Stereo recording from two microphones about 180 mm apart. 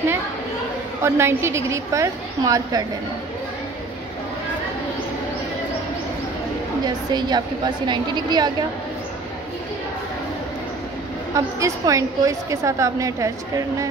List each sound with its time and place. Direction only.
1.0 s a woman's voice: 15° right (ahead or behind)
7.1 s a woman's voice: 25° right (ahead or behind)
11.3 s a woman's voice: 20° right (ahead or behind)